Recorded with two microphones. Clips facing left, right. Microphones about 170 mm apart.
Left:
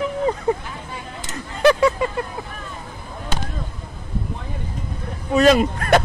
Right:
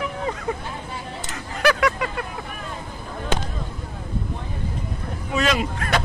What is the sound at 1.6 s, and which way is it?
Vehicle, 25° left (ahead or behind).